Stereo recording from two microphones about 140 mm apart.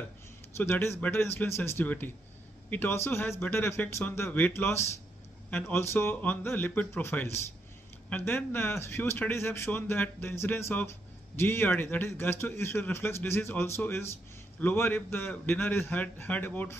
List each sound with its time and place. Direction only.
0.6 s speech: 15° left (ahead or behind)